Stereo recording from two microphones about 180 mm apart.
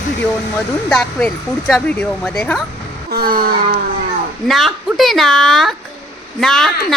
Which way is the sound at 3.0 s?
55° right (ahead or behind).